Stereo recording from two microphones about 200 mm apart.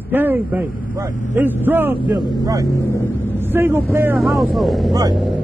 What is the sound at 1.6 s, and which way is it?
A man's voice, 10° right (ahead or behind).